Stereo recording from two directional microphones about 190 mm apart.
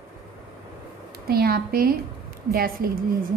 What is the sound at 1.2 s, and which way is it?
A woman's voice, 55° right (ahead or behind).